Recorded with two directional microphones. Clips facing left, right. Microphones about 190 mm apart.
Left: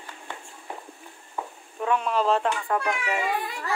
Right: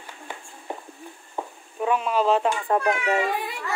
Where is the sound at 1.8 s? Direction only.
5° right (ahead or behind).